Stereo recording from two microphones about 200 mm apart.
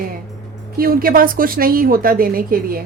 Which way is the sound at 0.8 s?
45° right (ahead or behind).